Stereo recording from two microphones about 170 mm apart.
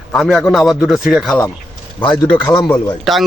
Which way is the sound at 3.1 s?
Centre (ahead or behind).